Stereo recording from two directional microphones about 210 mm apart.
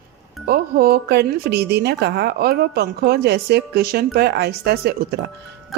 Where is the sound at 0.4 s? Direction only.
45° right (ahead or behind).